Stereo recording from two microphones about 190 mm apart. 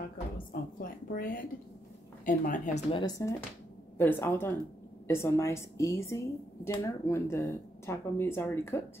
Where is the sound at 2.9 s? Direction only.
20° left (ahead or behind).